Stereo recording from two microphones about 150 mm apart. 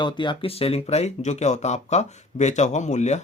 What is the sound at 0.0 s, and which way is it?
Speech, 30° left (ahead or behind).